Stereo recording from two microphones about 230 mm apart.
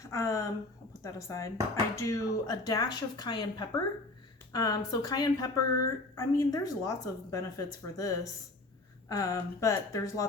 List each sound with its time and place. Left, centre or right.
0.1 s a woman's voice: centre